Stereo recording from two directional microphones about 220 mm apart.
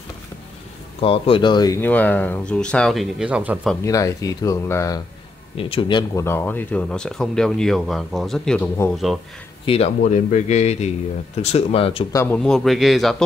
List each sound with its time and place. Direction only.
1.0 s speech: 25° left (ahead or behind); by 3.7 s 5° right (ahead or behind)
3.8 s speech: 15° left (ahead or behind)
5.6 s speech: 25° left (ahead or behind); by 9.2 s centre (ahead or behind)
9.7 s speech: 30° left (ahead or behind)
12.2 s speech: 5° left (ahead or behind)